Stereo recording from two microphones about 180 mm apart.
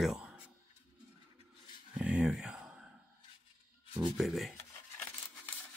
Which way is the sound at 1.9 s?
5° right (ahead or behind).